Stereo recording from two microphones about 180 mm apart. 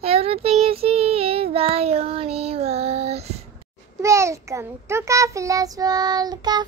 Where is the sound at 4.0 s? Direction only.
15° right (ahead or behind).